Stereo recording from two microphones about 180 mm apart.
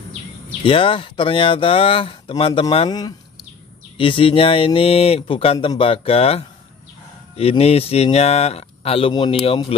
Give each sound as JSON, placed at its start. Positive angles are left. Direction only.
{"t": 0.7, "sound": "speech", "side_deg": 30}